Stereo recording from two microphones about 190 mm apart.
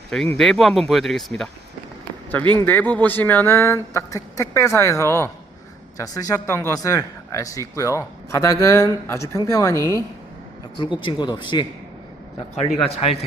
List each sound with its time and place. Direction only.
0.3 s speech: centre (ahead or behind)
2.4 s speech: 25° right (ahead or behind)
2.6 s speech: 10° left (ahead or behind); by 13.1 s 30° left (ahead or behind)